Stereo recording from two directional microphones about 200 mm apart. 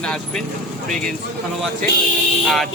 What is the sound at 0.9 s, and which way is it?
Speech, 40° right (ahead or behind).